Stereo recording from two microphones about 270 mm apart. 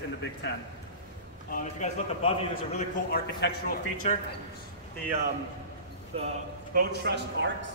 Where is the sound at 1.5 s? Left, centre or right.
Left.